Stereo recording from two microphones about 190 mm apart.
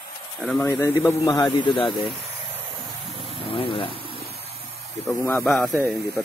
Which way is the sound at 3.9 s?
30° right (ahead or behind).